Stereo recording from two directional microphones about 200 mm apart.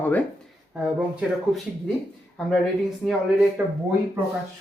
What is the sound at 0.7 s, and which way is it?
Speech, 5° right (ahead or behind).